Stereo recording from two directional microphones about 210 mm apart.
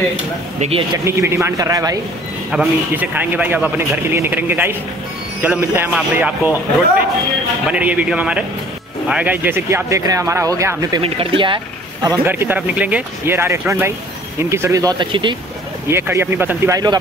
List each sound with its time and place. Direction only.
0.6 s speech: 30° right (ahead or behind)
0.9 s a man's voice: 15° right (ahead or behind)
2.5 s a man's voice: 5° right (ahead or behind)
7.7 s a man's voice: 5° right (ahead or behind)
11.0 s speech: 25° right (ahead or behind)
12.3 s a man's voice: 10° right (ahead or behind)
15.9 s a man's voice: 10° right (ahead or behind)